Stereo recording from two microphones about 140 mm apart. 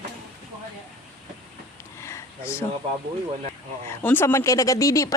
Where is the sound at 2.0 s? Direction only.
20° left (ahead or behind).